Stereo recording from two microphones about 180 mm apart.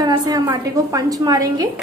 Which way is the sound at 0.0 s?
25° right (ahead or behind).